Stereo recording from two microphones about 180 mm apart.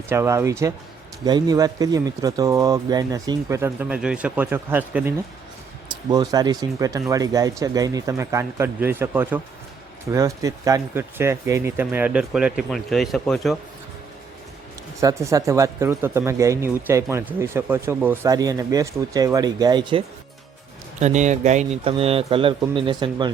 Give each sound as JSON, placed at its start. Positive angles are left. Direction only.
{"t": 0.1, "sound": "speech", "side_deg": -15}
{"t": 5.9, "sound": "speech", "side_deg": -20}
{"t": 15.0, "sound": "speech", "side_deg": -20}
{"t": 21.0, "sound": "speech", "side_deg": -40}